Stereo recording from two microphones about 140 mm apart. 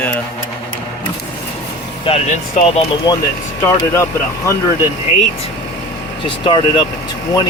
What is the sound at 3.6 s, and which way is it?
Speech, 20° left (ahead or behind).